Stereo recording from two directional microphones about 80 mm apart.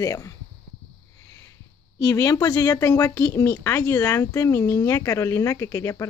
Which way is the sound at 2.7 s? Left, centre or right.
Left.